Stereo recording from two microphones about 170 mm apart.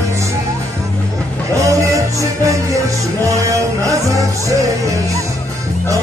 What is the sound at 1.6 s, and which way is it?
Music, 20° right (ahead or behind).